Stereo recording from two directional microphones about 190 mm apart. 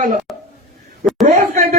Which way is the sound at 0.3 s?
Centre (ahead or behind).